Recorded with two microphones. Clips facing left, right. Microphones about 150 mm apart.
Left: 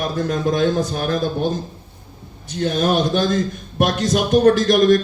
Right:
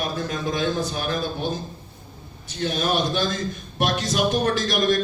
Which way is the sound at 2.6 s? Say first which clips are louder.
Left 5 dB; 45° left (ahead or behind).